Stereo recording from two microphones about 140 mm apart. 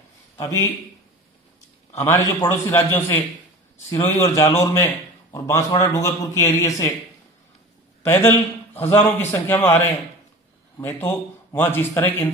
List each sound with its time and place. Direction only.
0.4 s a man's voice: 25° left (ahead or behind)
2.0 s a man's voice: 20° left (ahead or behind)
8.0 s a man's voice: 15° left (ahead or behind)